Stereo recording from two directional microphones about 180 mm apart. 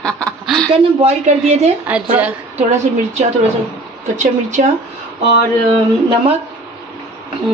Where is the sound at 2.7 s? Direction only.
35° right (ahead or behind).